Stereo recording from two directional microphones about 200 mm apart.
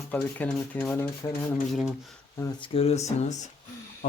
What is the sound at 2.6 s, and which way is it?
Speech, 30° left (ahead or behind).